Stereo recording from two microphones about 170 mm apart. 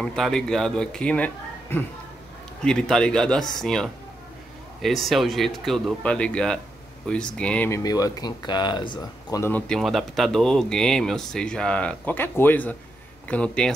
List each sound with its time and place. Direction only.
0.0 s speech: 5° left (ahead or behind); by 9.4 s 25° left (ahead or behind)
9.4 s speech: 10° left (ahead or behind)